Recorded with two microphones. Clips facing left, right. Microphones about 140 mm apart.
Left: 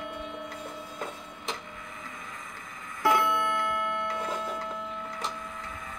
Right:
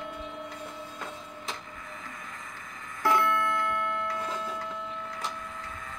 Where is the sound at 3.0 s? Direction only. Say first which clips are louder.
Left 1 dB; 10° left (ahead or behind).